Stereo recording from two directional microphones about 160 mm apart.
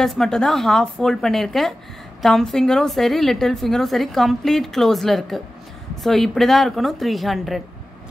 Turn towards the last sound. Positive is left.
turn(degrees=0)  # may be behind; listen again after turning